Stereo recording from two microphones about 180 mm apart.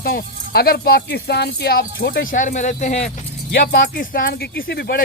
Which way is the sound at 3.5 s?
55° left (ahead or behind).